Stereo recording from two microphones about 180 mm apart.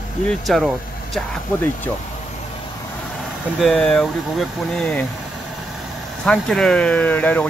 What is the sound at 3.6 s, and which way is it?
Speech, centre (ahead or behind).